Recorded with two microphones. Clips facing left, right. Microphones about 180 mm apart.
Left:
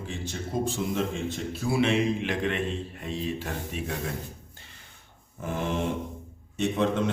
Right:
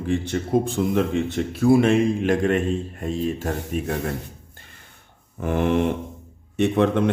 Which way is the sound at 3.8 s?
65° right (ahead or behind).